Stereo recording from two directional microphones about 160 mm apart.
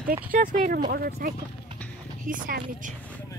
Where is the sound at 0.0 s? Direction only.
60° right (ahead or behind).